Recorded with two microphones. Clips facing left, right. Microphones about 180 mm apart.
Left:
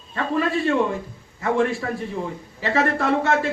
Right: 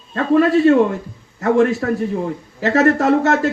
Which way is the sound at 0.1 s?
45° right (ahead or behind).